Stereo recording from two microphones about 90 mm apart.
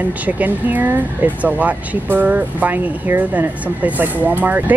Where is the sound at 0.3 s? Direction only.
15° right (ahead or behind).